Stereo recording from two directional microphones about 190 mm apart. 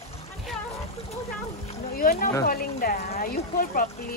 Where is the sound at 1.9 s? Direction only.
50° left (ahead or behind).